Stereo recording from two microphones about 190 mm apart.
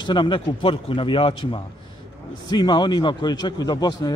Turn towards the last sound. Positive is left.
turn(degrees=20)  # may be behind; listen again after turning